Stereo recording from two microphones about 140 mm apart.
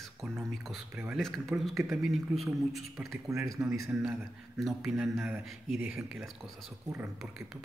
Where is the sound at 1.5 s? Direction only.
10° right (ahead or behind).